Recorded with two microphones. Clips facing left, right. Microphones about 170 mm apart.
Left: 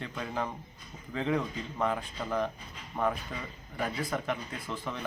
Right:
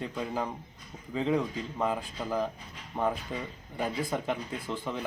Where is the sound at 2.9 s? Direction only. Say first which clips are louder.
Right 1 dB; 25° right (ahead or behind).